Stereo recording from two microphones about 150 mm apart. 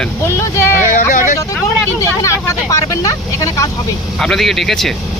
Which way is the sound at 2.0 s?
20° left (ahead or behind).